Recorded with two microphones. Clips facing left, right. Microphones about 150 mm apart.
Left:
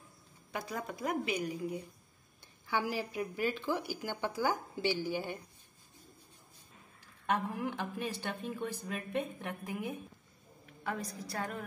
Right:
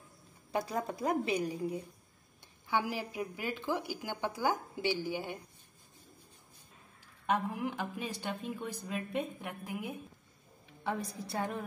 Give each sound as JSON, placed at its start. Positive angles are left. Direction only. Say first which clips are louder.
{"t": 0.5, "sound": "a woman's voice", "louder": "right 5 dB", "side_deg": -30}
{"t": 2.7, "sound": "speech", "louder": "even", "side_deg": -15}
{"t": 7.2, "sound": "speech", "louder": "right 1 dB", "side_deg": -15}
{"t": 10.8, "sound": "a woman's voice", "louder": "right 2 dB", "side_deg": -25}